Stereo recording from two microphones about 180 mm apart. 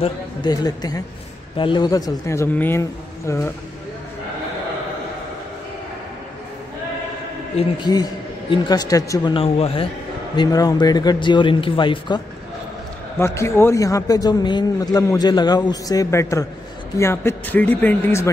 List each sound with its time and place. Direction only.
0.0 s speech: 25° left (ahead or behind)
7.5 s speech: 25° left (ahead or behind)
13.2 s speech: 15° left (ahead or behind)